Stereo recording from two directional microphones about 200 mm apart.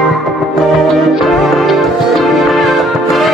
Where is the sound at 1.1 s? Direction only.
Centre (ahead or behind).